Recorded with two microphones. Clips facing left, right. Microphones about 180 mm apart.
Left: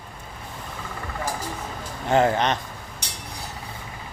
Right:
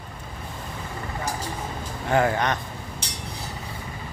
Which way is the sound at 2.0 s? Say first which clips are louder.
Left 2 dB; 25° left (ahead or behind).